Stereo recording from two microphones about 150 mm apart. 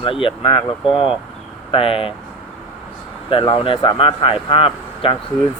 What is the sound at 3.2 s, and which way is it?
Speech, 35° left (ahead or behind).